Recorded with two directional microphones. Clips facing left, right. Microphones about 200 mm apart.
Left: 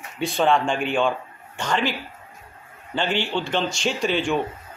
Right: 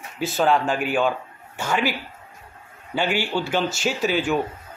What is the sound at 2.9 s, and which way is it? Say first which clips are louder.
Speech: right 1 dB; 10° right (ahead or behind).